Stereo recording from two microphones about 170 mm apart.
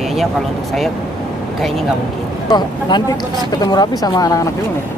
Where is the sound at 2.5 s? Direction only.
25° left (ahead or behind).